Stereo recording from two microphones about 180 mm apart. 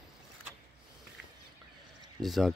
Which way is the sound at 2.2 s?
Centre (ahead or behind).